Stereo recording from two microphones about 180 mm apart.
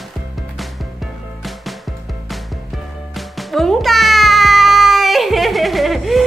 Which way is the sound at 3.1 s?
Centre (ahead or behind).